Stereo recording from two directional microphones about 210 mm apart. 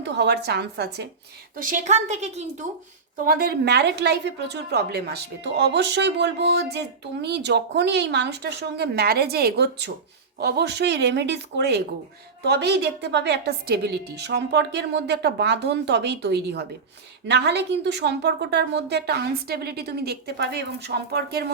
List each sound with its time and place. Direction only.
0.0 s a woman's voice: 55° right (ahead or behind)
1.5 s a woman's voice: 40° right (ahead or behind)
3.2 s a woman's voice: 45° right (ahead or behind)